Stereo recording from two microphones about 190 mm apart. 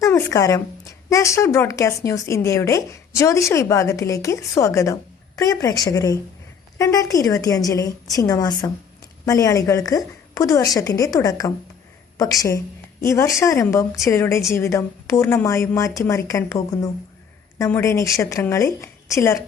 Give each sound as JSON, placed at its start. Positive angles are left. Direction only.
{"t": 0.0, "sound": "a woman's voice", "side_deg": 15}